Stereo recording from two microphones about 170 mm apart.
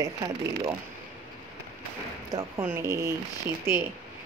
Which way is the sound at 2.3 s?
15° right (ahead or behind).